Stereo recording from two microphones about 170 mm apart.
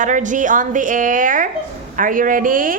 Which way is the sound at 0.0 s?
50° right (ahead or behind).